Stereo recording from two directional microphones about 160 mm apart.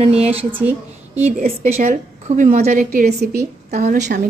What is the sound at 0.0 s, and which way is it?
Speech, 40° right (ahead or behind).